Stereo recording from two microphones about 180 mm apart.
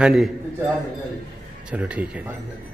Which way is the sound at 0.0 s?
5° right (ahead or behind).